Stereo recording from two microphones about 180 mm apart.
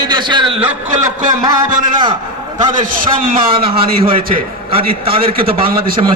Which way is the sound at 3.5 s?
30° right (ahead or behind).